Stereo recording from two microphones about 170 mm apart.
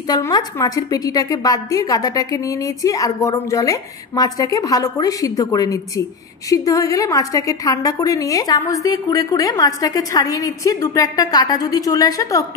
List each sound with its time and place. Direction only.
0.1 s a woman's voice: 25° left (ahead or behind)